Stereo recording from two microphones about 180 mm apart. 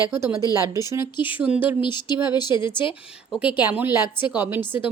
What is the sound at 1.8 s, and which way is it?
Speech, 25° left (ahead or behind).